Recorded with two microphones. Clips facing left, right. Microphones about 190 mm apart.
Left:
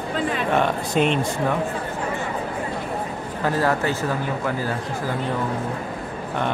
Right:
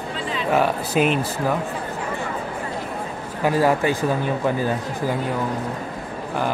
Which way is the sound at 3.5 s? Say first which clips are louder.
Right 3 dB; 15° right (ahead or behind).